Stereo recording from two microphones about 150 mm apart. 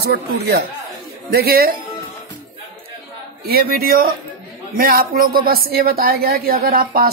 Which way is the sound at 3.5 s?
90° right.